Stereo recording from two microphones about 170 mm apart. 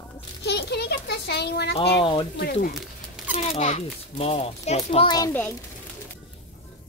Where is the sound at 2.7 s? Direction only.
5° right (ahead or behind).